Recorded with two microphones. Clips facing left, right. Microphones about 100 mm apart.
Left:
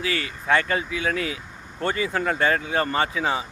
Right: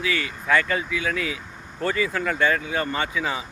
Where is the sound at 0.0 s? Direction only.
35° left (ahead or behind).